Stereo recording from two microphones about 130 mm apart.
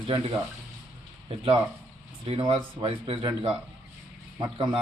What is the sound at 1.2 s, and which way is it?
A man's voice, 40° right (ahead or behind).